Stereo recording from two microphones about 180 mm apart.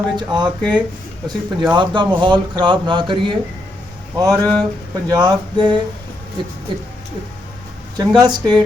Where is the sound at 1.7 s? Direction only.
25° right (ahead or behind).